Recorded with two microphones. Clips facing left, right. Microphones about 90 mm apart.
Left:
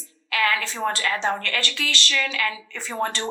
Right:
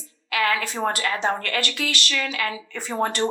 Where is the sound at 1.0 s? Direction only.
35° right (ahead or behind).